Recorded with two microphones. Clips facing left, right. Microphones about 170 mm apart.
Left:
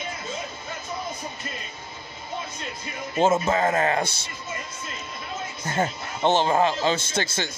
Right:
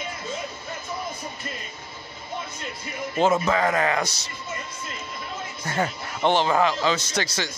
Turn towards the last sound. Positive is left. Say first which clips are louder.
# even
turn(degrees=25)  # may be behind; listen again after turning